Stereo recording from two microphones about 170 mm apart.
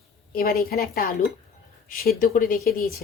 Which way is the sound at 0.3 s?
60° left (ahead or behind).